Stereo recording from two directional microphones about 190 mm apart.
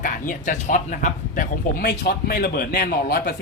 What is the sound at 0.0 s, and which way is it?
Speech, 45° left (ahead or behind).